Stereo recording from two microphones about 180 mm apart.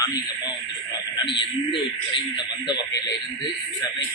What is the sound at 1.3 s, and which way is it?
Speech, 25° left (ahead or behind).